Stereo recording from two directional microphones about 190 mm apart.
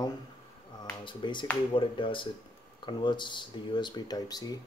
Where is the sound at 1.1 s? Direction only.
25° left (ahead or behind).